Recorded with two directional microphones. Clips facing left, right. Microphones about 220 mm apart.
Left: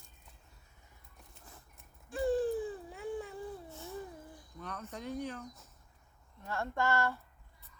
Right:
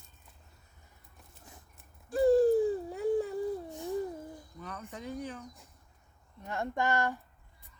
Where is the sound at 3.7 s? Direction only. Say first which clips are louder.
Right 9 dB; 15° right (ahead or behind).